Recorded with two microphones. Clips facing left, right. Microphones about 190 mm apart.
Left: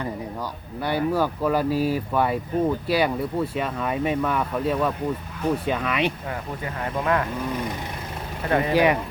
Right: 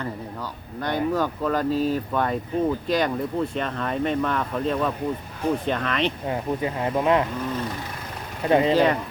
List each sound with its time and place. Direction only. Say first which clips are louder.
0.8 s speech: left 1 dB; 10° left (ahead or behind)
6.2 s speech: right 6 dB; 20° right (ahead or behind)
8.4 s speech: right 4 dB; 20° right (ahead or behind)
8.7 s speech: even; 10° left (ahead or behind)